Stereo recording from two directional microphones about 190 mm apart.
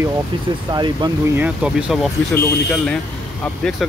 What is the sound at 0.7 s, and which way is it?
Speech, 20° right (ahead or behind).